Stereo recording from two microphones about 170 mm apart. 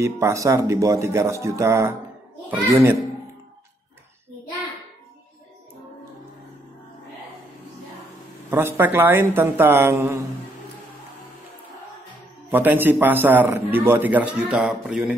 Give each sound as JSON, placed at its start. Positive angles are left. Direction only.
{"t": 0.0, "sound": "a man's voice", "side_deg": -15}
{"t": 8.5, "sound": "a man's voice", "side_deg": -15}
{"t": 12.4, "sound": "a man's voice", "side_deg": -10}